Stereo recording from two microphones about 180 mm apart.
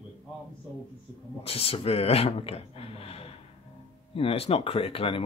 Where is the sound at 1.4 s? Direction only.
30° left (ahead or behind).